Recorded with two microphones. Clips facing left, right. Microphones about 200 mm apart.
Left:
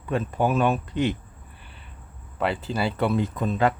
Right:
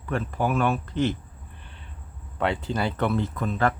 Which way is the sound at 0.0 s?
20° left (ahead or behind).